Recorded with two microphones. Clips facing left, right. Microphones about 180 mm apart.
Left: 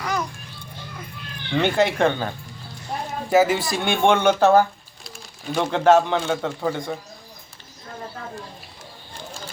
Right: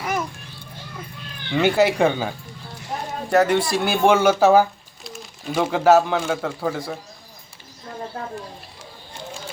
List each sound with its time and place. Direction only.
0.0 s children playing: 25° right (ahead or behind)
1.5 s speech: 5° right (ahead or behind)
3.2 s speech: centre (ahead or behind)